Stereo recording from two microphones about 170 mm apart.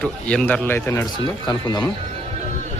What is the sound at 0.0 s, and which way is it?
Speech, 5° left (ahead or behind).